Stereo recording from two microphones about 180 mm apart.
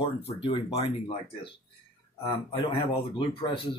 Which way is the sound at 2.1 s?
20° left (ahead or behind).